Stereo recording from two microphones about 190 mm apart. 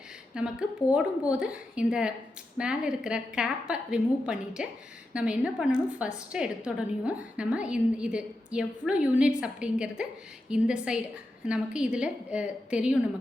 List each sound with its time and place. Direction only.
0.4 s a woman's voice: 5° right (ahead or behind)